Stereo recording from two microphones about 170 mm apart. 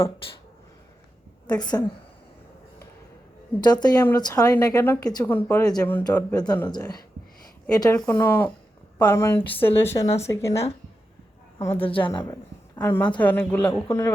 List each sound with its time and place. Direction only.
1.5 s speech: 25° left (ahead or behind)
3.6 s speech: 25° left (ahead or behind)
7.9 s a woman's voice: 5° left (ahead or behind)
11.8 s speech: 30° left (ahead or behind)
12.1 s a woman's voice: 20° left (ahead or behind)